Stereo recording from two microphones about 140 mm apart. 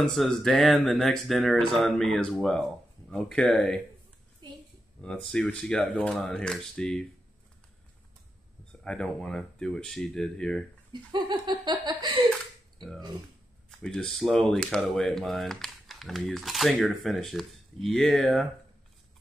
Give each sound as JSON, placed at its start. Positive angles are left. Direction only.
{"t": 0.0, "sound": "speech", "side_deg": 0}
{"t": 5.0, "sound": "speech", "side_deg": 5}
{"t": 8.8, "sound": "speech", "side_deg": 5}
{"t": 10.9, "sound": "speech", "side_deg": -30}
{"t": 13.7, "sound": "speech", "side_deg": 5}